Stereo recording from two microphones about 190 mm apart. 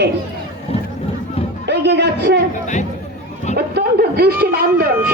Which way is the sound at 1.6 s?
65° right (ahead or behind).